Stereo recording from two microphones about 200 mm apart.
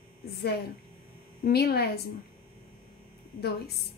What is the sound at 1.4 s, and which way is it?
Speech, 55° left (ahead or behind).